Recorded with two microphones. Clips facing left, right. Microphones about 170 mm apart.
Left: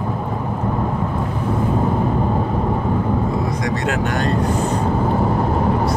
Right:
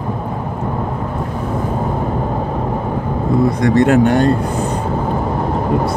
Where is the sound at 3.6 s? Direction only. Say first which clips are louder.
Right 9 dB; 55° right (ahead or behind).